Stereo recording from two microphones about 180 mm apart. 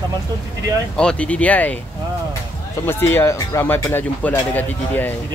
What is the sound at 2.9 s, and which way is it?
Speech, 10° left (ahead or behind).